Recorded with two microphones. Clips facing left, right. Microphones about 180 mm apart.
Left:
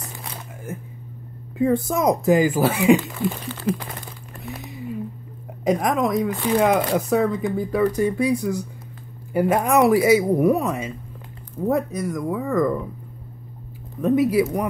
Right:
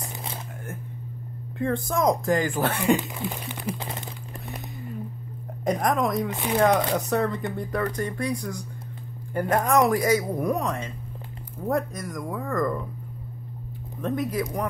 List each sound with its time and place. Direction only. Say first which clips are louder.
1.6 s speech: left 5 dB; 5° left (ahead or behind)
3.3 s speech: left 7 dB; 15° right (ahead or behind)
4.5 s a sound: left 6 dB; centre (ahead or behind)
5.6 s speech: left 3 dB; centre (ahead or behind)
14.0 s speech: left 9 dB; 10° left (ahead or behind)